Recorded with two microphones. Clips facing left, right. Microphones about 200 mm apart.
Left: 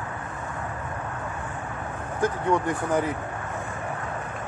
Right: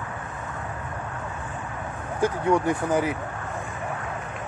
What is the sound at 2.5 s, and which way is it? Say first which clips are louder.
Speech: right 3 dB; 10° right (ahead or behind).